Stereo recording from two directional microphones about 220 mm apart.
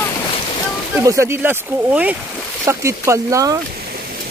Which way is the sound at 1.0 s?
15° right (ahead or behind).